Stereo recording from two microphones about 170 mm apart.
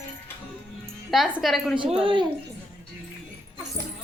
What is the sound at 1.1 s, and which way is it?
Speech, centre (ahead or behind).